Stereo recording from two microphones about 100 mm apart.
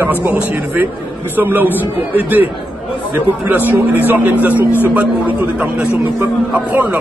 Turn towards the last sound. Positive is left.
turn(degrees=-15)  # may be behind; listen again after turning